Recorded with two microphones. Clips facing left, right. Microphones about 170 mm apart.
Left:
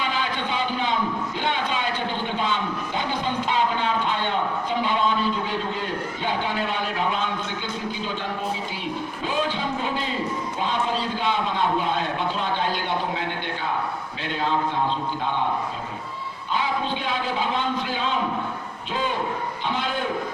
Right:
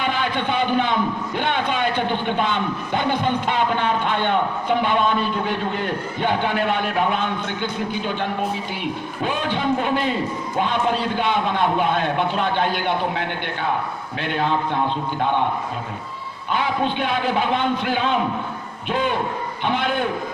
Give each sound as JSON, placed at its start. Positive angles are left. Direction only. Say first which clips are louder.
{"t": 0.0, "sound": "a man's voice", "louder": "right 4 dB", "side_deg": -60}
{"t": 16.5, "sound": "a man's voice", "louder": "right 4 dB", "side_deg": -60}